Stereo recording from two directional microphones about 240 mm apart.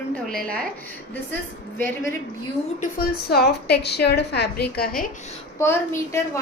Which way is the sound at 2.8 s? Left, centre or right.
Left.